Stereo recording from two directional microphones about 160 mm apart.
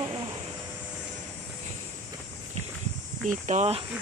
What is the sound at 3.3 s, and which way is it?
Speech, 50° right (ahead or behind).